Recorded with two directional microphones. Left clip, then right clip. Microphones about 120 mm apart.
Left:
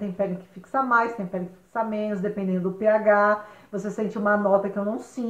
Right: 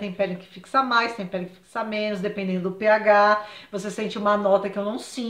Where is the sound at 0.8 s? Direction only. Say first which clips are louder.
Even; 20° right (ahead or behind).